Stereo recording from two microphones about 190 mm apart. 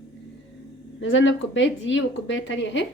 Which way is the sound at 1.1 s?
75° left (ahead or behind).